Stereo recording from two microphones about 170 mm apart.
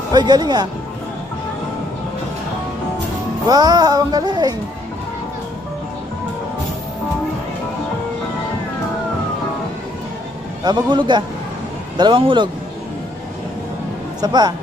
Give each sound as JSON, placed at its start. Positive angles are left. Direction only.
{"t": 0.1, "sound": "speech", "side_deg": -25}
{"t": 3.4, "sound": "speech", "side_deg": -25}
{"t": 10.6, "sound": "speech", "side_deg": -25}
{"t": 14.2, "sound": "speech", "side_deg": -25}